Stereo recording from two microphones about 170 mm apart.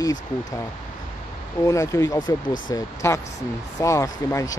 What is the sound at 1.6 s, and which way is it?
Speech, 20° left (ahead or behind).